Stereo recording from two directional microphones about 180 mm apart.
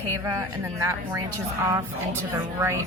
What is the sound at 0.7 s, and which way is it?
A woman's voice, 15° right (ahead or behind).